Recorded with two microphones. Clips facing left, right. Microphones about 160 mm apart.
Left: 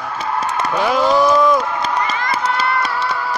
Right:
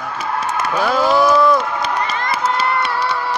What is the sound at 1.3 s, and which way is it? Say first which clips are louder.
Run: even; 10° left (ahead or behind).